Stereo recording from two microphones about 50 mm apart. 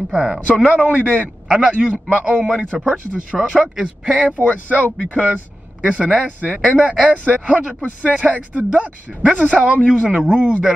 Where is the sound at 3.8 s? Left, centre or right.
Right.